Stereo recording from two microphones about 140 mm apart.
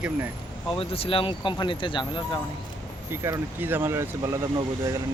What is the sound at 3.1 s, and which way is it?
Speech, 20° right (ahead or behind).